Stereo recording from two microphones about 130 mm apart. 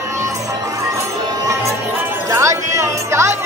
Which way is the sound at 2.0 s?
20° right (ahead or behind).